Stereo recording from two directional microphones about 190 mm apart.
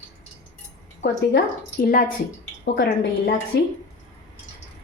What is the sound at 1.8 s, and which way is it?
Speech, 50° left (ahead or behind).